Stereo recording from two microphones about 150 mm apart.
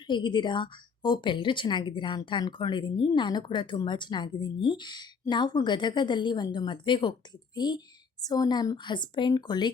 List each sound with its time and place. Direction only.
0.1 s a woman's voice: 30° left (ahead or behind)